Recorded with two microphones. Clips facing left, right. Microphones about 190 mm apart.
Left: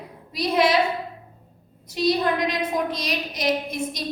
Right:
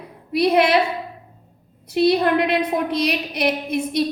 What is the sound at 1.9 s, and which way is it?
A woman's voice, 60° right (ahead or behind).